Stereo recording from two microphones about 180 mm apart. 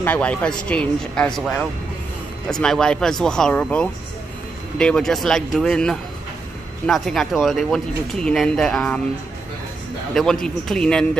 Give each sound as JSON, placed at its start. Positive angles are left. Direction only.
{"t": 0.0, "sound": "speech", "side_deg": 10}
{"t": 10.4, "sound": "speech", "side_deg": 5}